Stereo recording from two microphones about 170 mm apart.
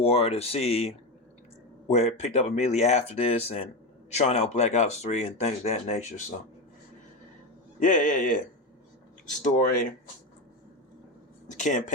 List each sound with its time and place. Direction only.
0.0 s speech: 35° left (ahead or behind)
7.8 s speech: 50° left (ahead or behind)
9.4 s speech: 50° left (ahead or behind)
11.5 s speech: 50° left (ahead or behind)